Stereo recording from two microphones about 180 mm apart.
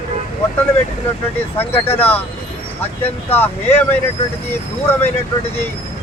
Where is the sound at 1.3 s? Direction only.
10° left (ahead or behind).